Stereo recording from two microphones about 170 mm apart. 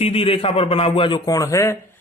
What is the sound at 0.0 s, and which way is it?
A man's voice, 35° left (ahead or behind).